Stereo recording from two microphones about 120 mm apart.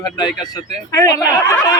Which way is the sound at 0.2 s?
35° left (ahead or behind).